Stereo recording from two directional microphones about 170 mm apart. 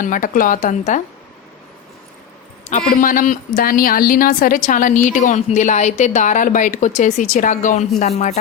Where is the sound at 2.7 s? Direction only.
55° left (ahead or behind).